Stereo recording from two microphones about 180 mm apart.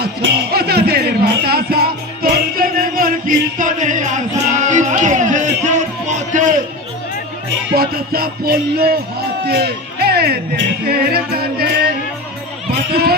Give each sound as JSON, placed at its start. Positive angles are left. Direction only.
{"t": 0.0, "sound": "music", "side_deg": -60}
{"t": 7.8, "sound": "speech", "side_deg": -55}
{"t": 12.9, "sound": "speech", "side_deg": -60}